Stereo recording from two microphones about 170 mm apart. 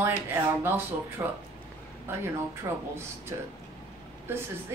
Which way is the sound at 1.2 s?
15° right (ahead or behind).